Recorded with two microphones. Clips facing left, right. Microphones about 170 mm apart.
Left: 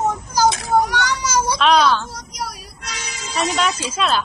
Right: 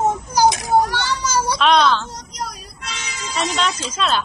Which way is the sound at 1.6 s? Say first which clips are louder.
Even; centre (ahead or behind).